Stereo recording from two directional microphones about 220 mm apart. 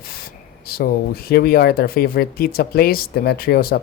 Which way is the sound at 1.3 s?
45° left (ahead or behind).